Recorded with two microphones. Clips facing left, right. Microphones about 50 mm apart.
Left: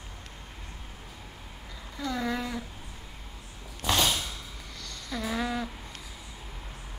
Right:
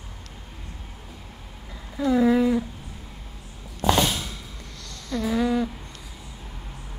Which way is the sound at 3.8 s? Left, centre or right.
Right.